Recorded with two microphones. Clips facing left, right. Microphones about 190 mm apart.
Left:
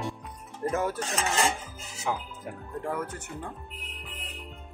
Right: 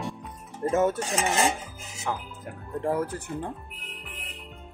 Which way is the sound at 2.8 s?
30° right (ahead or behind).